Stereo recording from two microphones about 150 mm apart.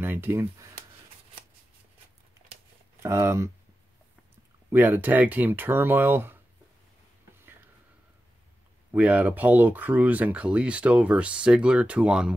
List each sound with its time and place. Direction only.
0.0 s speech: 15° right (ahead or behind)
3.0 s speech: 20° right (ahead or behind)
4.6 s speech: 15° right (ahead or behind)
8.9 s speech: 10° right (ahead or behind)